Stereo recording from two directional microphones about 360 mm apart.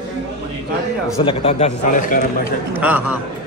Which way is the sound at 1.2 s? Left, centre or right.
Centre.